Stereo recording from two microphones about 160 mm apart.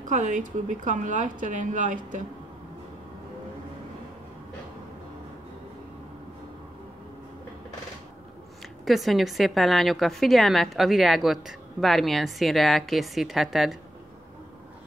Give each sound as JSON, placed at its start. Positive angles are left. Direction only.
{"t": 0.0, "sound": "speech", "side_deg": -50}
{"t": 8.8, "sound": "a woman's voice", "side_deg": 0}